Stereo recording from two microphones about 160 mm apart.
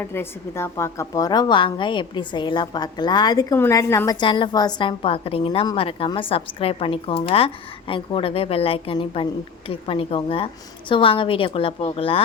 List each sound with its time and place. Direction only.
0.0 s a woman's voice: 15° left (ahead or behind); by 12.2 s 35° left (ahead or behind)